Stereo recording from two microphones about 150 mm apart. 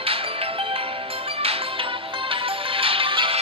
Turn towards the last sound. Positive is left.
turn(degrees=-35)  # may be behind; listen again after turning